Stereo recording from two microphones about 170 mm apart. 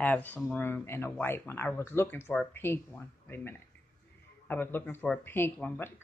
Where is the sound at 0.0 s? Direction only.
10° left (ahead or behind).